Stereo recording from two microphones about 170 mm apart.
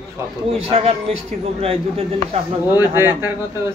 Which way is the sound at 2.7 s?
15° right (ahead or behind).